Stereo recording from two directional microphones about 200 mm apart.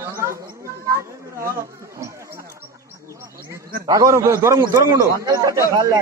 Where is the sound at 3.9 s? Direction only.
15° right (ahead or behind).